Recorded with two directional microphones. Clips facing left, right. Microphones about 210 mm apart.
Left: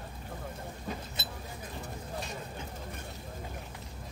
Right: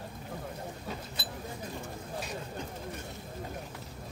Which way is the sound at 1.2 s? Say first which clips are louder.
Right 1 dB; 25° left (ahead or behind).